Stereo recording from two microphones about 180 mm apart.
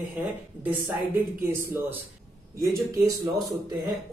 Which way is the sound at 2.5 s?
15° right (ahead or behind).